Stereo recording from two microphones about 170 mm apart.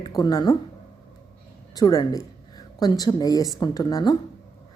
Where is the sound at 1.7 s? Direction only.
25° left (ahead or behind).